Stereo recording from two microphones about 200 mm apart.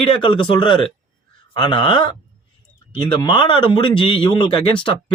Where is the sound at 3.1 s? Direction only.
25° left (ahead or behind).